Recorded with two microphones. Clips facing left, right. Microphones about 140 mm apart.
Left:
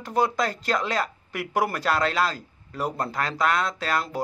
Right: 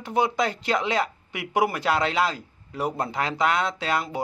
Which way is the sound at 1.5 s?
10° right (ahead or behind).